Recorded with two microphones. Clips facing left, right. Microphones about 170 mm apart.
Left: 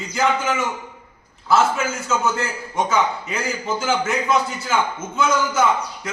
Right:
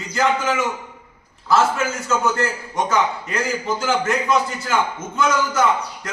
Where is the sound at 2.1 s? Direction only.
Centre (ahead or behind).